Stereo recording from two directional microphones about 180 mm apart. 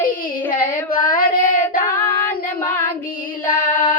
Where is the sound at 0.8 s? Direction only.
50° left (ahead or behind).